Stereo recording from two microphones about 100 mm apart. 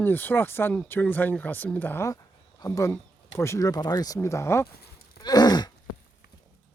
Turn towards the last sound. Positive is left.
turn(degrees=45)  # may be behind; listen again after turning